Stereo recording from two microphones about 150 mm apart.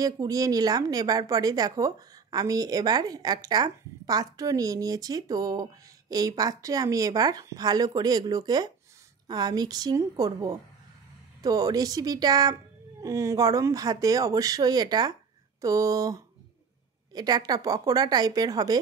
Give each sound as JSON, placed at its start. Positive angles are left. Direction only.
{"t": 0.0, "sound": "speech", "side_deg": -25}